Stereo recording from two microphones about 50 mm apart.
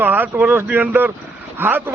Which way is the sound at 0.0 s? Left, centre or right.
Right.